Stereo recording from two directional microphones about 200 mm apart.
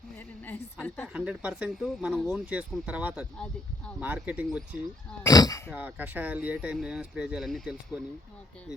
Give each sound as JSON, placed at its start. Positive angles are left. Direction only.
{"t": 0.4, "sound": "a woman's voice", "side_deg": 10}
{"t": 1.0, "sound": "speech", "side_deg": -5}
{"t": 3.3, "sound": "speech", "side_deg": 5}
{"t": 4.0, "sound": "speech", "side_deg": -5}
{"t": 5.2, "sound": "a woman's voice", "side_deg": 20}
{"t": 5.7, "sound": "speech", "side_deg": -10}